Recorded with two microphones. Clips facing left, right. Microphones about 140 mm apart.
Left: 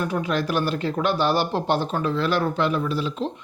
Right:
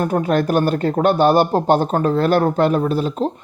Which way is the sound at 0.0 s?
50° right (ahead or behind).